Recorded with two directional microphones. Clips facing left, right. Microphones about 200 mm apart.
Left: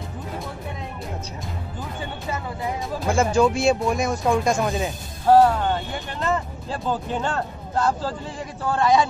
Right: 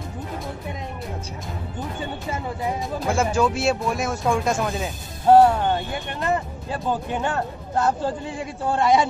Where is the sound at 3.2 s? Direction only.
5° right (ahead or behind).